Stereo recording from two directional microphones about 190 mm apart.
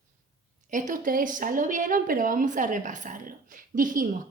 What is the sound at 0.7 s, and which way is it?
A woman's voice, 40° right (ahead or behind).